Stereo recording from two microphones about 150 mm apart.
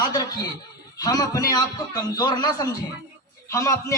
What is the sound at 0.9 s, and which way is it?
A man's voice, 25° left (ahead or behind).